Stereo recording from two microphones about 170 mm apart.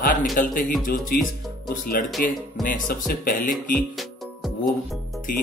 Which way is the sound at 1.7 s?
55° left (ahead or behind).